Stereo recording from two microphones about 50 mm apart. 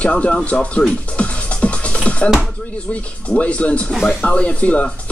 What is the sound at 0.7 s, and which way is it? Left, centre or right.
Music, left.